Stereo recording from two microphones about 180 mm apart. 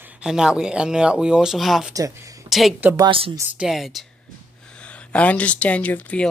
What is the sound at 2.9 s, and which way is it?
Speech, 25° right (ahead or behind).